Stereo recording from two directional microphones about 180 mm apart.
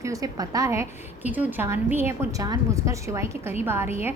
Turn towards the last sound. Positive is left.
turn(degrees=-15)  # may be behind; listen again after turning